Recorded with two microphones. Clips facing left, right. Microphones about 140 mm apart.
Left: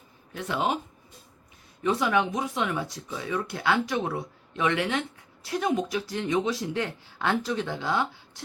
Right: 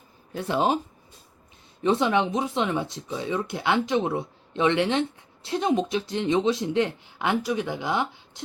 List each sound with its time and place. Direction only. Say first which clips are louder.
0.3 s speech: right 4 dB; 30° right (ahead or behind)
1.8 s speech: right 3 dB; 25° right (ahead or behind)